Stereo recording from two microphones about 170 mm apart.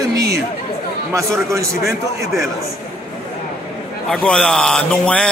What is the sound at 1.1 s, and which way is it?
Speech, 15° right (ahead or behind).